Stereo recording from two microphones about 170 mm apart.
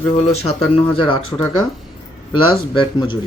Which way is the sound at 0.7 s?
30° left (ahead or behind).